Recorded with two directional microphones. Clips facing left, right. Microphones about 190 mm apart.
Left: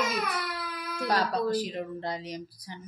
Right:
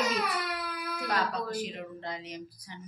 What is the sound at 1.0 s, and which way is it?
Speech, 35° left (ahead or behind).